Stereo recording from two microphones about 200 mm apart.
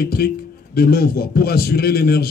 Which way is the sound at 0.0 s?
50° left (ahead or behind).